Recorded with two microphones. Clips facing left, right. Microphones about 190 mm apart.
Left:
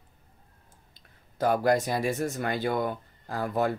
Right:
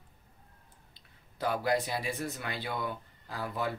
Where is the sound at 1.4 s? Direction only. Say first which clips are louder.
Left 6 dB; 45° left (ahead or behind).